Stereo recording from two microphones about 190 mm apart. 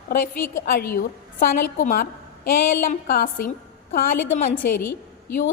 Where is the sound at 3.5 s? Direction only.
50° left (ahead or behind).